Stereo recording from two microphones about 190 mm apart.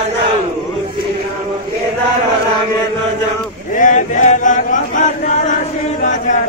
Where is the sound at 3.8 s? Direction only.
40° left (ahead or behind).